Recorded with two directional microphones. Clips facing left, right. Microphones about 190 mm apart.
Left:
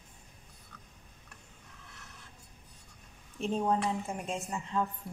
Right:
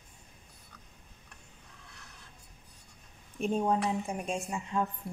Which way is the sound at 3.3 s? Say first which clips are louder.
Right 1 dB; 15° right (ahead or behind).